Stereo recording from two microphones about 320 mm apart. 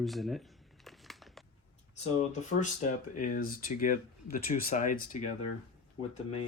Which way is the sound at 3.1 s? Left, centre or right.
Left.